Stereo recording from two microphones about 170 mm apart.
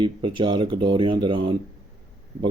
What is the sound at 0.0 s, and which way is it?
Speech, 30° right (ahead or behind).